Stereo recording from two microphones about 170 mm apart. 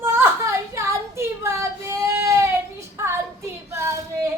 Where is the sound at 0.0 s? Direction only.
15° right (ahead or behind).